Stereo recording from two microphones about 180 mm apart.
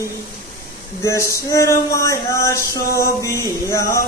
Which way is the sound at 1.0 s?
15° left (ahead or behind).